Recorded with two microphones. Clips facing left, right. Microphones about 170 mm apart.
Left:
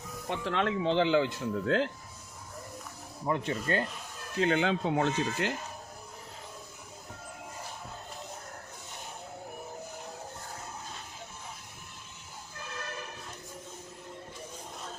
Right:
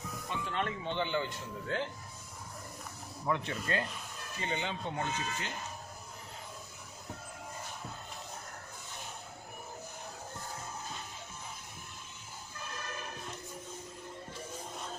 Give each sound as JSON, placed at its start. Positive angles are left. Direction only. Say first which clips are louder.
{"t": 0.3, "sound": "speech", "louder": "left 6 dB", "side_deg": 85}
{"t": 3.2, "sound": "speech", "louder": "left 4 dB", "side_deg": 40}
{"t": 4.4, "sound": "speech", "louder": "left 10 dB", "side_deg": 90}